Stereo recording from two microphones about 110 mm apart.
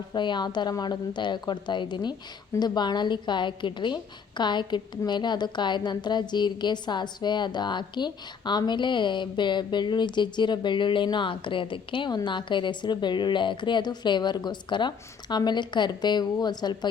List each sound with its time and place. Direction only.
0.1 s a woman's voice: 45° left (ahead or behind)